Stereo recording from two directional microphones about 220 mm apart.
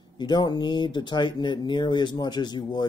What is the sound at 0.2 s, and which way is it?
Speech, 20° left (ahead or behind).